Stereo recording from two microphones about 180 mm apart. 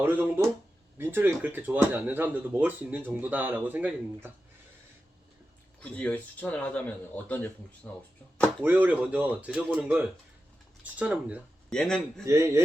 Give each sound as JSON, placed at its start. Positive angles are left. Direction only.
{"t": 0.0, "sound": "speech", "side_deg": -10}
{"t": 5.8, "sound": "speech", "side_deg": 5}
{"t": 8.6, "sound": "speech", "side_deg": -10}
{"t": 11.7, "sound": "a man's voice", "side_deg": 5}
{"t": 12.2, "sound": "speech", "side_deg": -15}